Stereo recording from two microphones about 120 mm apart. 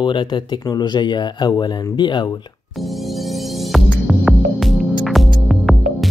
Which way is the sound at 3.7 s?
Centre (ahead or behind).